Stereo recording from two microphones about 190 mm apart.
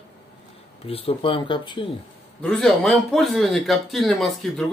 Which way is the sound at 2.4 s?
5° left (ahead or behind).